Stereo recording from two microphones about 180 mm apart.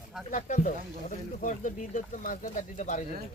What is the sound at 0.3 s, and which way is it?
Speech, 45° left (ahead or behind).